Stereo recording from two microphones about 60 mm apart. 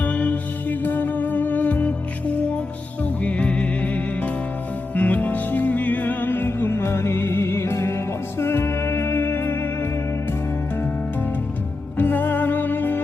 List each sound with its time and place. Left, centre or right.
0.0 s music: left
3.0 s music: left
11.9 s music: left